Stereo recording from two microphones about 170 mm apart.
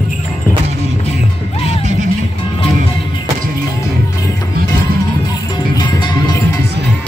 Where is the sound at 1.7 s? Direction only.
45° right (ahead or behind).